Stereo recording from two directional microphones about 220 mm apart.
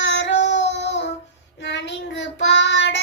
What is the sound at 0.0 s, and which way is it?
Child singing, 55° left (ahead or behind).